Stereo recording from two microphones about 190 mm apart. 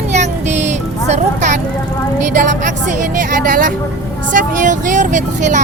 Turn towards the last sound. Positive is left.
turn(degrees=-40)  # may be behind; listen again after turning